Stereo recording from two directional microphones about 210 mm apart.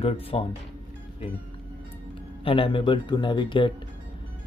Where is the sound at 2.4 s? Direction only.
25° left (ahead or behind).